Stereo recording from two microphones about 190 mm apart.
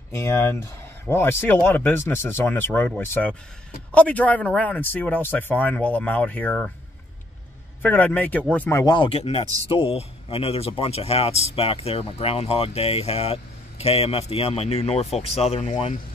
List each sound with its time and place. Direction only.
0.4 s speech: 15° left (ahead or behind)
7.8 s speech: 10° left (ahead or behind); by 16.0 s 40° left (ahead or behind)